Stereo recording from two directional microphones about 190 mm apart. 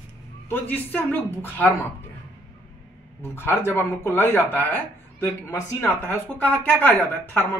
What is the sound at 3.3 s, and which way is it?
Speech, 10° left (ahead or behind).